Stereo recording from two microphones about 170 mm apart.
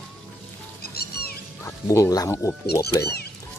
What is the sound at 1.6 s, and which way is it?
Speech, 15° left (ahead or behind).